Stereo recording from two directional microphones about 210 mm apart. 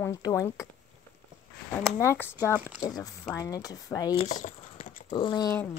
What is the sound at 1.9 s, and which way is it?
A woman's voice, 10° left (ahead or behind).